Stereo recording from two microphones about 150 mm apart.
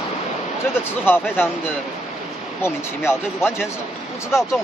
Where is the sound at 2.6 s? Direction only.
15° left (ahead or behind).